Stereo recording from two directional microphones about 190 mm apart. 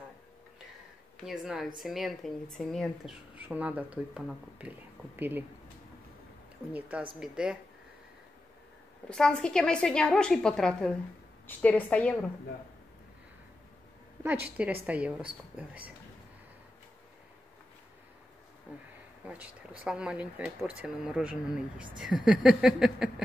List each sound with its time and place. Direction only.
1.2 s speech: centre (ahead or behind)
6.7 s speech: 5° right (ahead or behind)
9.1 s a woman's voice: 5° left (ahead or behind)
14.6 s a woman's voice: 5° right (ahead or behind)
18.7 s a woman's voice: 5° right (ahead or behind)